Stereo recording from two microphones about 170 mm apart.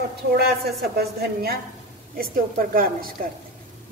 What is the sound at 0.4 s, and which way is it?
A woman's voice, 65° right (ahead or behind).